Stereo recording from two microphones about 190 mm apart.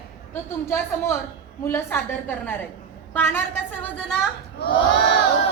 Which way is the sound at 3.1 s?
10° left (ahead or behind).